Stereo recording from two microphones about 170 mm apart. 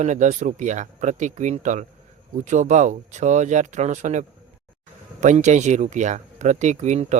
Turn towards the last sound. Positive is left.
turn(degrees=-45)  # may be behind; listen again after turning